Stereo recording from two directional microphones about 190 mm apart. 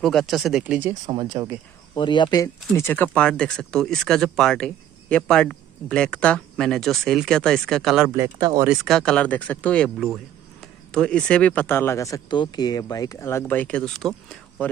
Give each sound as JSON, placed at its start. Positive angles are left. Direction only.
{"t": 0.0, "sound": "speech", "side_deg": 0}
{"t": 1.0, "sound": "speech", "side_deg": -20}
{"t": 2.0, "sound": "speech", "side_deg": 25}
{"t": 8.1, "sound": "speech", "side_deg": -20}
{"t": 8.6, "sound": "speech", "side_deg": 0}